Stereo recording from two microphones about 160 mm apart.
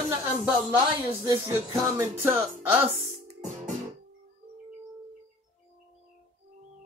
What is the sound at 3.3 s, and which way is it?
Music, 45° right (ahead or behind).